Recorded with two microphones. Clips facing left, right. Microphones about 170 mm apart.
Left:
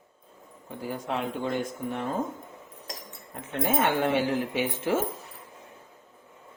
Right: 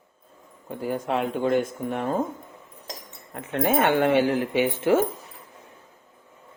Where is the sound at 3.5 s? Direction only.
65° right (ahead or behind).